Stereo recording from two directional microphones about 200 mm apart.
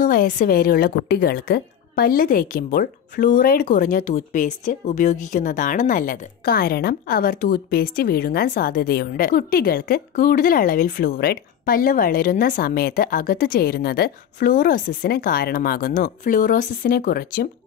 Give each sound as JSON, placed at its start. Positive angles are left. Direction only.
{"t": 0.0, "sound": "a woman's voice", "side_deg": 45}